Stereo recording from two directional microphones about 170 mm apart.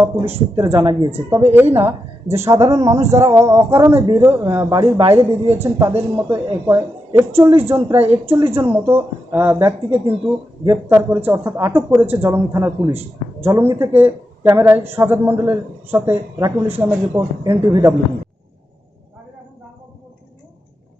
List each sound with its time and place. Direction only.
0.6 s speech: 20° right (ahead or behind)
4.7 s a woman's voice: 30° right (ahead or behind)
5.1 s speech: 15° right (ahead or behind)